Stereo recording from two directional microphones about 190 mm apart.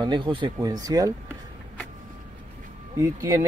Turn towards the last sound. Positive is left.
turn(degrees=-15)  # may be behind; listen again after turning